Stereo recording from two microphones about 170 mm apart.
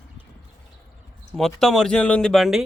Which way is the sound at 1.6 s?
5° left (ahead or behind).